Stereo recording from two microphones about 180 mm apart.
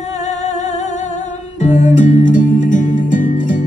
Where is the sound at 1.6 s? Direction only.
40° left (ahead or behind).